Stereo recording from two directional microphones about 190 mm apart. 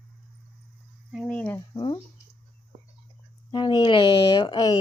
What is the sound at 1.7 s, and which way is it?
Speech, 25° left (ahead or behind).